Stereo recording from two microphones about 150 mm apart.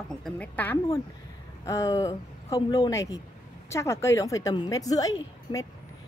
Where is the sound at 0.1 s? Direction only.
5° left (ahead or behind).